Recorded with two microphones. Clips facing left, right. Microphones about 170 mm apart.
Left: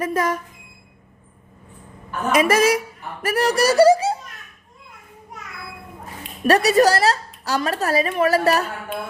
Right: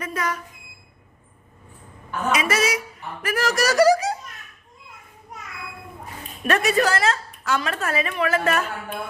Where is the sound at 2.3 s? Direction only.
50° left (ahead or behind).